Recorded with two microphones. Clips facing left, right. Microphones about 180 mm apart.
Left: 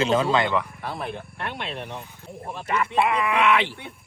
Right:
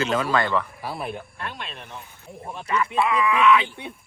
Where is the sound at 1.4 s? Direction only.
60° left (ahead or behind).